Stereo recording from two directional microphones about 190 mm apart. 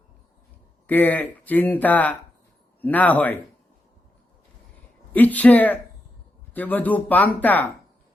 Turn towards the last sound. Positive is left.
turn(degrees=10)  # may be behind; listen again after turning